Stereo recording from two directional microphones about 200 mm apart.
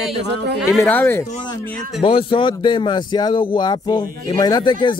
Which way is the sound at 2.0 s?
25° left (ahead or behind).